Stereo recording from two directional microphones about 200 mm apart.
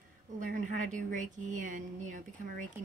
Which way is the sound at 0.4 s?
40° right (ahead or behind).